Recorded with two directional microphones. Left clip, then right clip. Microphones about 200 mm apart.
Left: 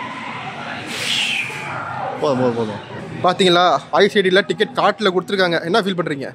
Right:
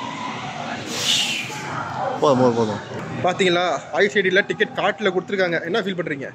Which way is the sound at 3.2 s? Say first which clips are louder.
Left 5 dB; 30° left (ahead or behind).